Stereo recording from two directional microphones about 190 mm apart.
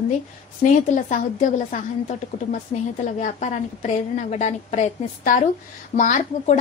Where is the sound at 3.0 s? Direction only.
40° left (ahead or behind).